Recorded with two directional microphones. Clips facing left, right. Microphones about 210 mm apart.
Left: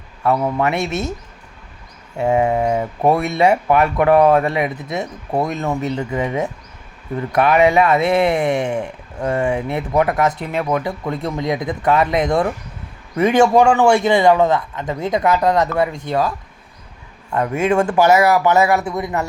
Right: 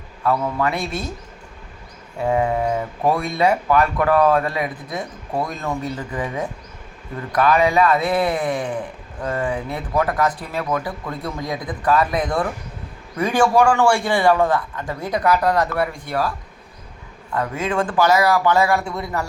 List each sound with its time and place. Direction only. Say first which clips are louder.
0.2 s speech: left 3 dB; 25° left (ahead or behind)
2.1 s speech: left 3 dB; 25° left (ahead or behind)
17.6 s speech: left 5 dB; 25° left (ahead or behind)